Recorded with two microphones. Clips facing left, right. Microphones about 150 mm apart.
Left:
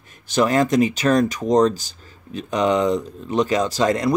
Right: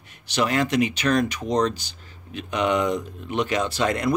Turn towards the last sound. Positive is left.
turn(degrees=35)  # may be behind; listen again after turning